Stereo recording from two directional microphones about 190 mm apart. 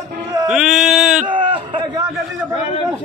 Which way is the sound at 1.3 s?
25° right (ahead or behind).